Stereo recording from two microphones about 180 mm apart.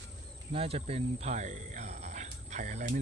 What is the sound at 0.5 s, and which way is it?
Speech, 35° right (ahead or behind).